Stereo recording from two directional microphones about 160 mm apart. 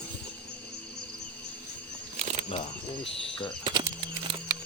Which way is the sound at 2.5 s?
35° left (ahead or behind).